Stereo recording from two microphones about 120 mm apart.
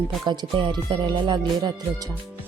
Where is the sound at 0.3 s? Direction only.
40° right (ahead or behind).